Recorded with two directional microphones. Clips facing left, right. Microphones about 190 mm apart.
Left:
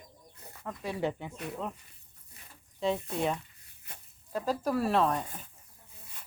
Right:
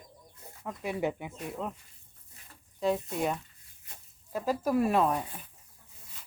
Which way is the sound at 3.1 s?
5° right (ahead or behind).